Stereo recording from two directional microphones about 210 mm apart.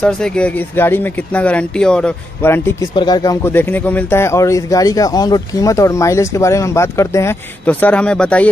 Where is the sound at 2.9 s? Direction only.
20° left (ahead or behind).